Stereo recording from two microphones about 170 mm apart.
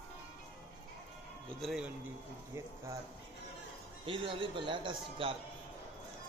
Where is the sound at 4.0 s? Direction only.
30° right (ahead or behind).